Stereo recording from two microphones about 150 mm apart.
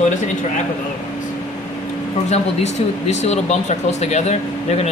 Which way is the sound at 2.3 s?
50° left (ahead or behind).